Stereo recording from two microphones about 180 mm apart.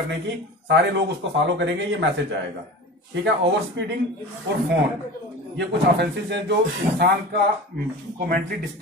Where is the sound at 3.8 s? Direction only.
80° right.